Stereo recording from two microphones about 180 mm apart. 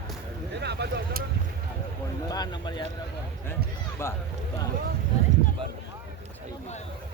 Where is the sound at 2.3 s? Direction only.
25° left (ahead or behind).